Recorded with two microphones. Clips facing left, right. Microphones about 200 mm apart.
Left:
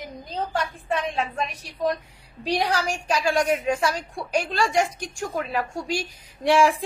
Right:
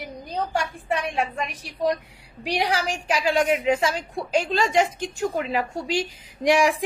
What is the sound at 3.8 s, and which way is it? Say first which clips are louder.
A woman's voice: right 1 dB; 20° right (ahead or behind).